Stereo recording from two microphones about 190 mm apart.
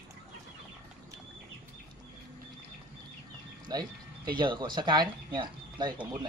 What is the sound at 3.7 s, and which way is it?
Speech, 20° right (ahead or behind).